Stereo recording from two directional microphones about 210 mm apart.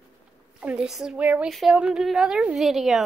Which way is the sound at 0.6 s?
5° right (ahead or behind).